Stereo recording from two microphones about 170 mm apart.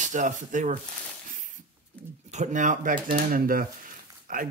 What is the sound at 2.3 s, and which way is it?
Speech, 45° right (ahead or behind).